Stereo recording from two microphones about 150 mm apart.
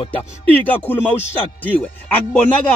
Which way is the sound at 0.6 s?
10° left (ahead or behind).